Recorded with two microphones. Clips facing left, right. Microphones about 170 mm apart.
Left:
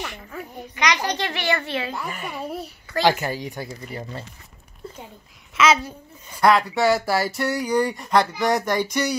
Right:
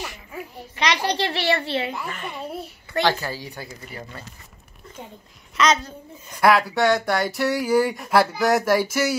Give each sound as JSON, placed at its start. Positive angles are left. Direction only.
{"t": 0.7, "sound": "a child's voice", "side_deg": -30}
{"t": 2.0, "sound": "a child's voice", "side_deg": 10}
{"t": 3.0, "sound": "speech", "side_deg": 20}
{"t": 5.6, "sound": "a child's voice", "side_deg": 10}
{"t": 6.4, "sound": "a sound", "side_deg": 0}